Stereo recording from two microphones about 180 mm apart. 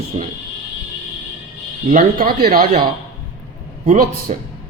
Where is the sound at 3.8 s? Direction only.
50° right (ahead or behind).